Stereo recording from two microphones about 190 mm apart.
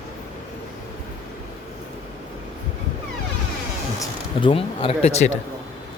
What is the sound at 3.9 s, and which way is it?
Speech, 25° left (ahead or behind).